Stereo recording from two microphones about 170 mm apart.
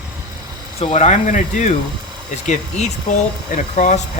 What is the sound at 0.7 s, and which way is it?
Speech, 35° left (ahead or behind).